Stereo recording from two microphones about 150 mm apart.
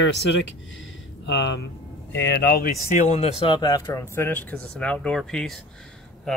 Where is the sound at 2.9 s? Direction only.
45° left (ahead or behind).